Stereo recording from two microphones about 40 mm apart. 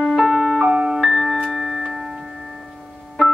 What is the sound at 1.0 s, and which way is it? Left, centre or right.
Music, centre.